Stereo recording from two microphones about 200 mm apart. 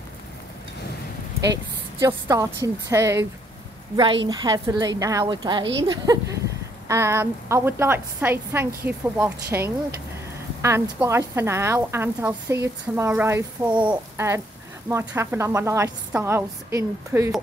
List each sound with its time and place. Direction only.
1.4 s a woman's voice: 15° right (ahead or behind)